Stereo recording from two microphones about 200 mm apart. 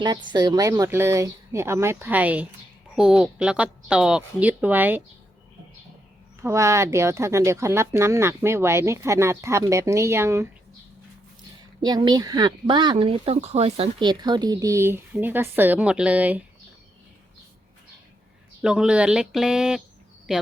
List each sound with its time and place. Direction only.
0.0 s speech: 25° right (ahead or behind)
6.4 s speech: 15° right (ahead or behind)
11.8 s speech: 20° right (ahead or behind)
18.6 s speech: 5° right (ahead or behind)